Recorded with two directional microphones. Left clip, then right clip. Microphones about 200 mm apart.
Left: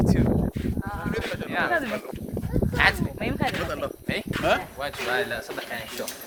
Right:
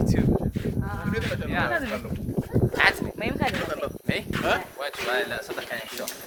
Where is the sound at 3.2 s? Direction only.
35° right (ahead or behind).